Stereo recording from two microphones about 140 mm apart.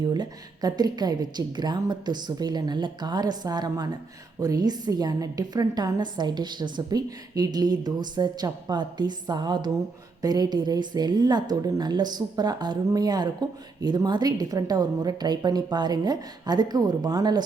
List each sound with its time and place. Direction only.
0.0 s speech: 30° right (ahead or behind)